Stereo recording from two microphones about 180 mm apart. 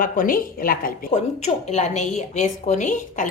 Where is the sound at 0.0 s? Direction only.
50° left (ahead or behind).